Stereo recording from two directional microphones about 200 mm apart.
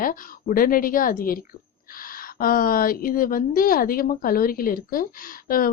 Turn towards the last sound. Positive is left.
turn(degrees=45)  # may be behind; listen again after turning